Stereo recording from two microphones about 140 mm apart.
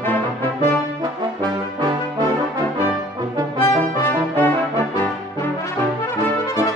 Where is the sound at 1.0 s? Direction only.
30° right (ahead or behind).